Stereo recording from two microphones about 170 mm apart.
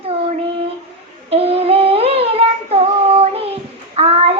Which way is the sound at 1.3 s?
35° right (ahead or behind).